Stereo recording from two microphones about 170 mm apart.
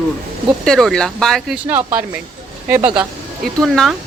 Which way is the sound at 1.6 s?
10° right (ahead or behind).